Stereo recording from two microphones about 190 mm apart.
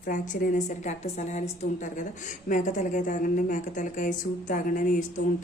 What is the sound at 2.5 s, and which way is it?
A woman's voice, 40° left (ahead or behind).